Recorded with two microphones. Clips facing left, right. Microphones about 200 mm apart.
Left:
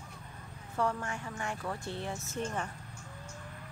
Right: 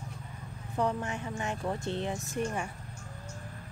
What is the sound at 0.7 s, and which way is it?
Speech, 20° right (ahead or behind).